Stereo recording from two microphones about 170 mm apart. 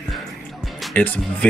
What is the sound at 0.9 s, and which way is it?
Speech, 10° left (ahead or behind).